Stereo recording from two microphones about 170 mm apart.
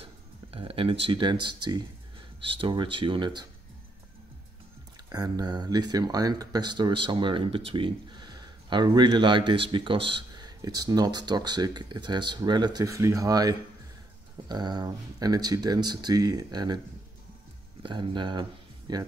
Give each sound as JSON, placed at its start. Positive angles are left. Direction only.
{"t": 0.0, "sound": "a sound", "side_deg": -35}
{"t": 1.0, "sound": "speech", "side_deg": -30}
{"t": 5.1, "sound": "speech", "side_deg": -25}
{"t": 17.8, "sound": "speech", "side_deg": -25}